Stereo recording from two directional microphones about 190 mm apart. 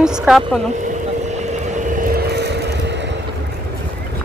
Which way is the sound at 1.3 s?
40° right (ahead or behind).